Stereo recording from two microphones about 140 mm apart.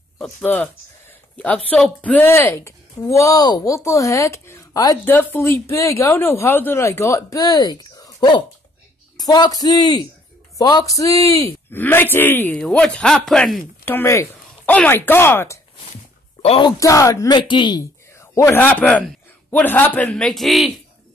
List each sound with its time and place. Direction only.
1.4 s a woman's voice: 10° left (ahead or behind)
13.8 s speech: 15° left (ahead or behind)
16.4 s speech: 40° left (ahead or behind)
16.8 s a woman's voice: 25° left (ahead or behind)
18.2 s a man's voice: 20° left (ahead or behind); by 20.7 s centre (ahead or behind)